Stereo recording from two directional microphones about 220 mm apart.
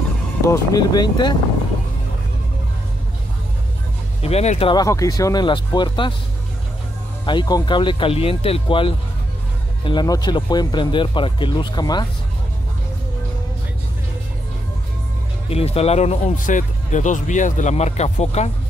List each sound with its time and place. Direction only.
0.4 s speech: 15° left (ahead or behind)
4.2 s speech: 30° left (ahead or behind)
7.2 s speech: 20° left (ahead or behind)
15.5 s speech: 25° left (ahead or behind)